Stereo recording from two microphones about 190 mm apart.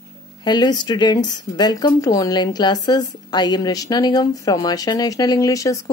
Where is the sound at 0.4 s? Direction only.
20° left (ahead or behind).